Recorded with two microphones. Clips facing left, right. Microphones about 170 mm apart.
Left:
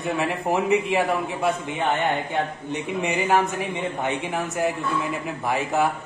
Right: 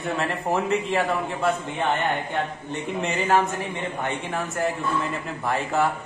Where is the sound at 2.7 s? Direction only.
15° left (ahead or behind).